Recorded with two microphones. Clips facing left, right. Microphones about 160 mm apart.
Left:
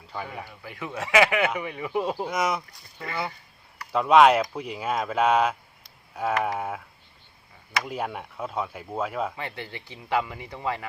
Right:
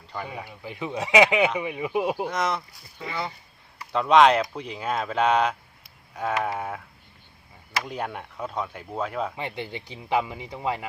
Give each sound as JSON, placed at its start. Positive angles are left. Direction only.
{"t": 0.3, "sound": "speech", "side_deg": -15}
{"t": 2.3, "sound": "speech", "side_deg": 10}
{"t": 3.9, "sound": "speech", "side_deg": 5}
{"t": 9.3, "sound": "speech", "side_deg": -15}